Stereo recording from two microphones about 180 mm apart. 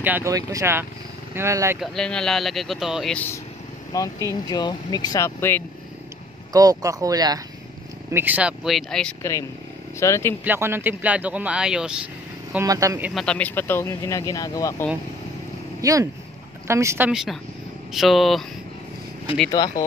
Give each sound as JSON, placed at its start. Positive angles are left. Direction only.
{"t": 0.0, "sound": "speech", "side_deg": -15}
{"t": 1.8, "sound": "speech", "side_deg": 5}
{"t": 3.9, "sound": "speech", "side_deg": 20}
{"t": 6.5, "sound": "speech", "side_deg": -20}
{"t": 8.1, "sound": "speech", "side_deg": -10}
{"t": 9.2, "sound": "speech", "side_deg": 15}
{"t": 10.4, "sound": "speech", "side_deg": -10}
{"t": 12.5, "sound": "speech", "side_deg": -15}
{"t": 13.1, "sound": "speech", "side_deg": 5}
{"t": 15.8, "sound": "speech", "side_deg": -20}
{"t": 17.1, "sound": "speech", "side_deg": 0}
{"t": 19.6, "sound": "speech", "side_deg": 20}